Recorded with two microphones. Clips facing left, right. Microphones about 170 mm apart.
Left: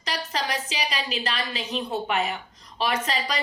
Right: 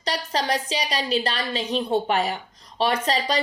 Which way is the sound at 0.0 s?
35° right (ahead or behind).